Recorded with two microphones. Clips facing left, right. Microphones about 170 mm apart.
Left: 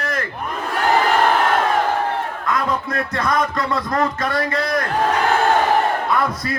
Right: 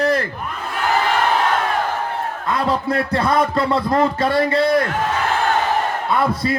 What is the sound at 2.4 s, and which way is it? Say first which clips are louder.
A man's voice: right 3 dB; 30° right (ahead or behind).